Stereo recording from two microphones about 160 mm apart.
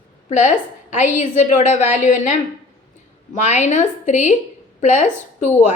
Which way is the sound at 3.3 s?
50° left (ahead or behind).